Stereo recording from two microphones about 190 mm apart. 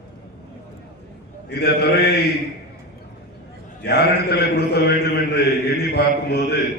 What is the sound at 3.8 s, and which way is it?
A man's voice, 60° left (ahead or behind).